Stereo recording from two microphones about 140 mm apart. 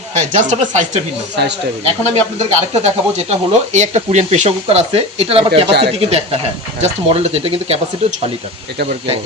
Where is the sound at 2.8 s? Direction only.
55° right (ahead or behind).